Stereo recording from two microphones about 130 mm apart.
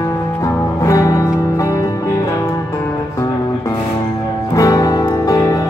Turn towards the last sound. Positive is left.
turn(degrees=25)  # may be behind; listen again after turning